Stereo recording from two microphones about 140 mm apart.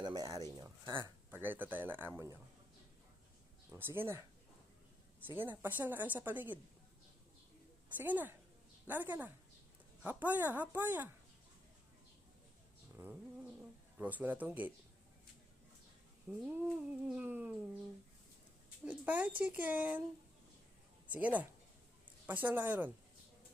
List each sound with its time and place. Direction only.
0.0 s a sound: 25° right (ahead or behind)
1.3 s a woman's voice: 15° right (ahead or behind)
3.7 s a woman's voice: 15° right (ahead or behind)
5.2 s a woman's voice: 15° right (ahead or behind)
7.9 s a woman's voice: 10° right (ahead or behind)
13.0 s cat: 15° right (ahead or behind)
14.0 s a woman's voice: 10° right (ahead or behind)
16.3 s a woman's voice: 10° right (ahead or behind)
18.9 s a woman's voice: 10° right (ahead or behind)
21.1 s a woman's voice: 10° right (ahead or behind)